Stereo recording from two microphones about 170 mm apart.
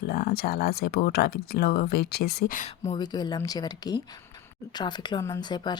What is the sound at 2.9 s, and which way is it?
Speech, 25° left (ahead or behind).